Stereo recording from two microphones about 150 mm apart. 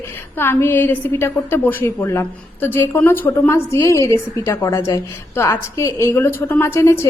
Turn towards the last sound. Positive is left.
turn(degrees=15)  # may be behind; listen again after turning